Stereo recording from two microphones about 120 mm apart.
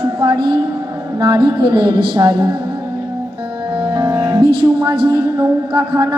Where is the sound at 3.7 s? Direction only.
40° right (ahead or behind).